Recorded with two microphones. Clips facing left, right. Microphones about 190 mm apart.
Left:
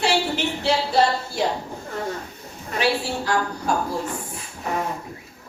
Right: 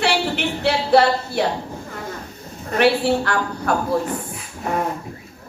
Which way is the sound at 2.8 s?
60° right (ahead or behind).